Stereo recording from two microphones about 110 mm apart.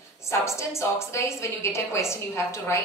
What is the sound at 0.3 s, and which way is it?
A woman's voice, 25° left (ahead or behind).